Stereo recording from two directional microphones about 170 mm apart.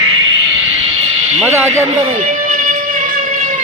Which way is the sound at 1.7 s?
40° right (ahead or behind).